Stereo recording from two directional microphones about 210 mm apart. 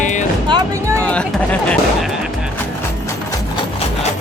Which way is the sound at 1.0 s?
5° left (ahead or behind).